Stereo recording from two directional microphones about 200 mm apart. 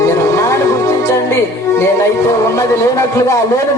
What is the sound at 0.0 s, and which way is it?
Music, 15° left (ahead or behind).